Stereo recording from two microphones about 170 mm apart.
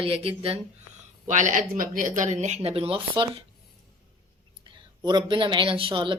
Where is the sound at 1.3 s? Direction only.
50° right (ahead or behind).